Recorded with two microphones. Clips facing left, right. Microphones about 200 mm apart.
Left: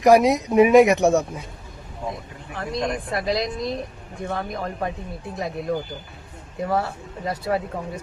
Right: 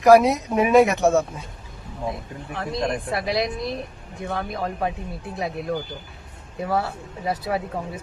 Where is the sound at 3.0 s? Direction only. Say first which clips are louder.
Even; centre (ahead or behind).